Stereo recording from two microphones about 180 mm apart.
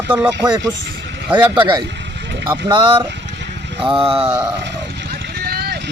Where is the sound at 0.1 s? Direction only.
10° right (ahead or behind).